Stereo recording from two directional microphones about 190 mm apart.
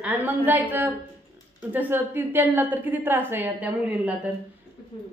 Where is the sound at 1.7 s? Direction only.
10° right (ahead or behind).